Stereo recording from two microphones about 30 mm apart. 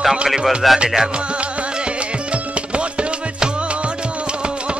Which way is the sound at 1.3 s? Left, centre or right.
Right.